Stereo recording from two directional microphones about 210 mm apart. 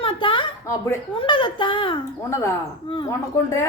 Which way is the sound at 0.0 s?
25° left (ahead or behind).